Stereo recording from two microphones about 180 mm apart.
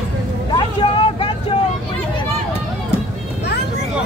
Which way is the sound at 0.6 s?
30° left (ahead or behind).